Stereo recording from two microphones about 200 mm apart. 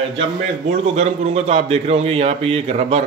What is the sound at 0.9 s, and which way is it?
A man's voice, 30° right (ahead or behind).